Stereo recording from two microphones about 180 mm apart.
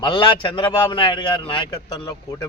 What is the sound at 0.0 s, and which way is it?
A man's voice, 25° left (ahead or behind).